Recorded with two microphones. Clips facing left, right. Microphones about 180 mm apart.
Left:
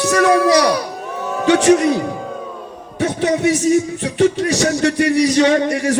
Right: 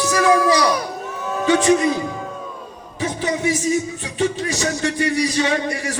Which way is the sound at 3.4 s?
70° left (ahead or behind).